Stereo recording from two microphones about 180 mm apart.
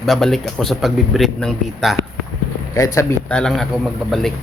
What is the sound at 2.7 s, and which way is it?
Speech, 15° left (ahead or behind).